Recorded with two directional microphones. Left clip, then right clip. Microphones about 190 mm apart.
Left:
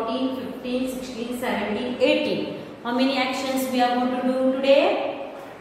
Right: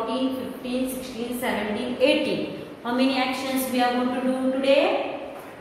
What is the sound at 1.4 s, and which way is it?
A woman's voice, centre (ahead or behind).